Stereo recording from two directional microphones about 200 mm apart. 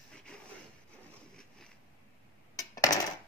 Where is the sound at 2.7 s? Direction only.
20° left (ahead or behind).